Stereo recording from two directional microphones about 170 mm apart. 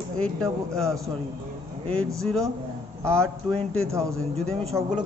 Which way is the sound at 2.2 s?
Centre (ahead or behind).